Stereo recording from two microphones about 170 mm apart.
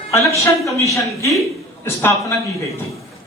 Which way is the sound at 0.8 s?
20° left (ahead or behind).